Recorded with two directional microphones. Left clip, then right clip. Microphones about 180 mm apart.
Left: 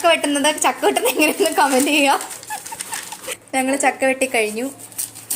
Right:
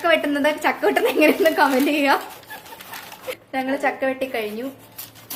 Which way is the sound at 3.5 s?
30° left (ahead or behind).